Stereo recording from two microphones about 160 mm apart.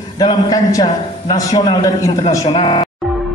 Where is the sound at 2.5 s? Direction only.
30° left (ahead or behind).